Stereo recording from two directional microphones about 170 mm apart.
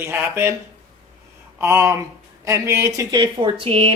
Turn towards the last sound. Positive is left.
turn(degrees=-35)  # may be behind; listen again after turning